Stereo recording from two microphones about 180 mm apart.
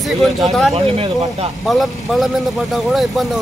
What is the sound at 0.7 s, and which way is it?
Speech, 35° right (ahead or behind).